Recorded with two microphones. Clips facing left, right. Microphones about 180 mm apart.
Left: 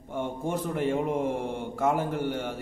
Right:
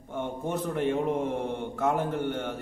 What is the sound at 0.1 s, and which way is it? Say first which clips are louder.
A man's voice: left 1 dB; 10° left (ahead or behind).